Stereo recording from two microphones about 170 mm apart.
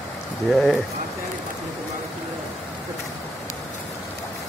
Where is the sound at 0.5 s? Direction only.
Centre (ahead or behind).